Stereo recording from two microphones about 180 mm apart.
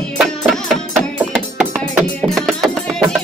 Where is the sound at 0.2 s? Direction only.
Centre (ahead or behind).